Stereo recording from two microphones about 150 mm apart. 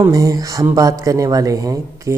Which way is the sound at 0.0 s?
25° right (ahead or behind).